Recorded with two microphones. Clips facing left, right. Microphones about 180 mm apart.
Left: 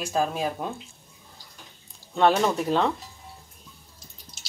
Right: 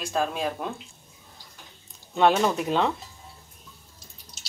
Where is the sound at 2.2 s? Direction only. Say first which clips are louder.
Even; centre (ahead or behind).